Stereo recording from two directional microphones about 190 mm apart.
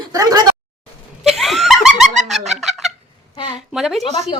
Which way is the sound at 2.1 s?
40° right (ahead or behind).